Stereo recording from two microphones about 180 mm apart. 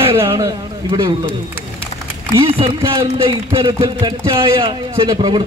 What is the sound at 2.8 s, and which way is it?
A man's voice, 20° right (ahead or behind).